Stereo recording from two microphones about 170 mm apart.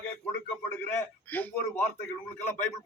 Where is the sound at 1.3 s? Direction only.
10° left (ahead or behind).